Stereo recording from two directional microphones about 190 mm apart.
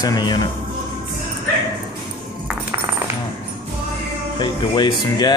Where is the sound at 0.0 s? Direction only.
20° left (ahead or behind).